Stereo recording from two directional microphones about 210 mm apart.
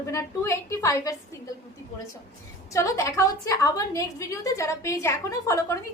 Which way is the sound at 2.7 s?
15° left (ahead or behind).